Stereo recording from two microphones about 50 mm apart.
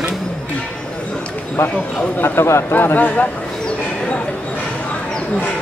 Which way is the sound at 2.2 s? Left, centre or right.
Left.